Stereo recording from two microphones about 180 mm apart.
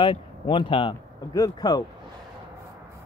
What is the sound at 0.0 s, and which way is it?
Speech, 25° left (ahead or behind).